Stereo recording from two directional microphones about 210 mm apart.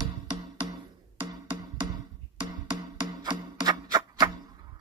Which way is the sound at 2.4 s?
20° right (ahead or behind).